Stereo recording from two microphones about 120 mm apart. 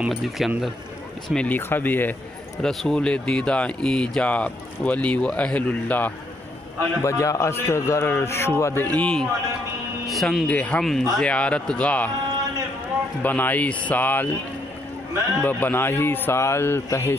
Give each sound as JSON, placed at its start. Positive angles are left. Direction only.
{"t": 0.0, "sound": "speech", "side_deg": 0}
{"t": 1.3, "sound": "speech", "side_deg": 10}
{"t": 2.6, "sound": "speech", "side_deg": 0}
{"t": 7.0, "sound": "a man's voice", "side_deg": 25}
{"t": 8.8, "sound": "speech", "side_deg": 10}
{"t": 13.2, "sound": "speech", "side_deg": 15}
{"t": 15.4, "sound": "a man's voice", "side_deg": 15}